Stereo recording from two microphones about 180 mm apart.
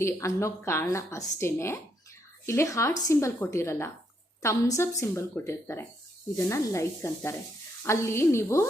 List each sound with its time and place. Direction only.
0.0 s speech: 15° left (ahead or behind)